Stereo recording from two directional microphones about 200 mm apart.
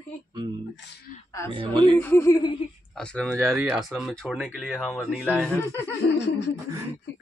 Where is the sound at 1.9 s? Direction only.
10° left (ahead or behind).